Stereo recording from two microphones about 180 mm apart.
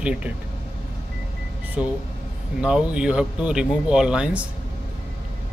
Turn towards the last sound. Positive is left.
turn(degrees=-5)  # may be behind; listen again after turning